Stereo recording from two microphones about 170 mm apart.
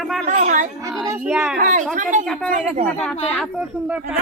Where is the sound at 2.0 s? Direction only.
45° right (ahead or behind).